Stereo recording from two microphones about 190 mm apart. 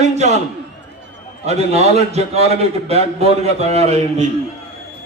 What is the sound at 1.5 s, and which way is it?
A man's voice, 35° right (ahead or behind).